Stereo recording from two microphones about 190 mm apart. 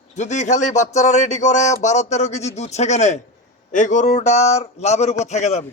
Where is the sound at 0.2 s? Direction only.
40° left (ahead or behind).